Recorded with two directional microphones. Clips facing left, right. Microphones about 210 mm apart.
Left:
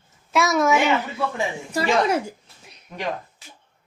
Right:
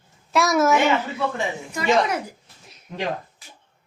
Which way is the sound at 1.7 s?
35° left (ahead or behind).